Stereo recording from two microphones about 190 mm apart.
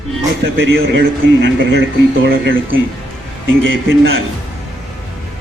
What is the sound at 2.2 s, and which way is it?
Speech, 85° right.